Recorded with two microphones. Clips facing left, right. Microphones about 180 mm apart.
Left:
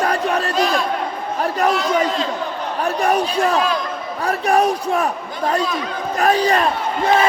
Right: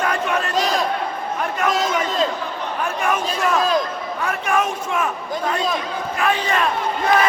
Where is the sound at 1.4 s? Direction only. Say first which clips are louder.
Left 3 dB; 35° left (ahead or behind).